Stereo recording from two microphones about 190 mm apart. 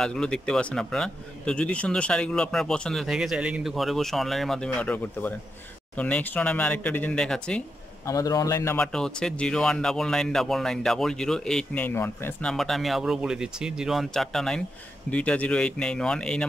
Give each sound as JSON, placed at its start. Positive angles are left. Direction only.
{"t": 0.0, "sound": "speech", "side_deg": 5}
{"t": 8.1, "sound": "speech", "side_deg": 20}
{"t": 8.8, "sound": "speech", "side_deg": 5}